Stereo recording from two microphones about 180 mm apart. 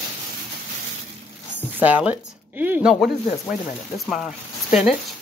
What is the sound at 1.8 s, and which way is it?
A woman's voice, 10° right (ahead or behind).